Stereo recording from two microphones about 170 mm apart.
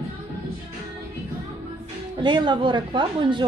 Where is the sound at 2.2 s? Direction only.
25° right (ahead or behind).